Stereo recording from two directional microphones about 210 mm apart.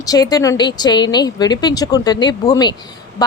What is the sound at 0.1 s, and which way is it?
A woman's voice, 20° left (ahead or behind).